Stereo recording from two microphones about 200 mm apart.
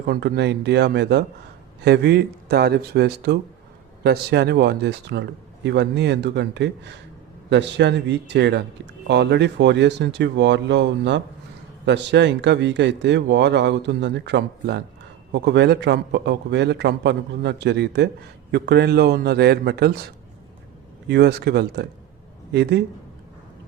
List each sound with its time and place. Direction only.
0.1 s speech: 55° right (ahead or behind)
21.1 s speech: 55° right (ahead or behind)